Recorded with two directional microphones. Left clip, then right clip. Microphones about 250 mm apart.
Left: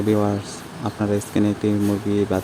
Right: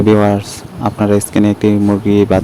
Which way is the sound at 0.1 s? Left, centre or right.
Right.